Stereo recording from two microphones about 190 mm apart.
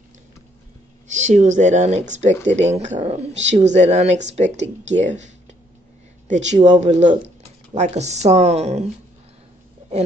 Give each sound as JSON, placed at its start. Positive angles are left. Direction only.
{"t": 1.1, "sound": "a woman's voice", "side_deg": -40}